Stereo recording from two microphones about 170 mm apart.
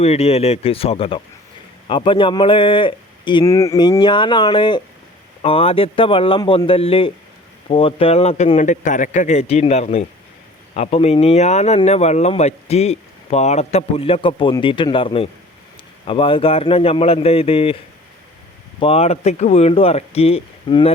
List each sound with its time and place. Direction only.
0.0 s speech: 35° left (ahead or behind)
18.8 s speech: 35° left (ahead or behind)